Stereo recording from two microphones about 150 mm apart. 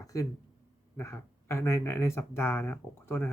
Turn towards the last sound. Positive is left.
turn(degrees=15)  # may be behind; listen again after turning